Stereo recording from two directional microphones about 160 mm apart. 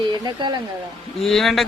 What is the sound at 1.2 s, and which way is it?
Speech, centre (ahead or behind).